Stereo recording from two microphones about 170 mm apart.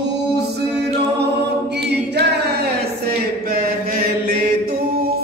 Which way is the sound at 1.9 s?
75° right (ahead or behind).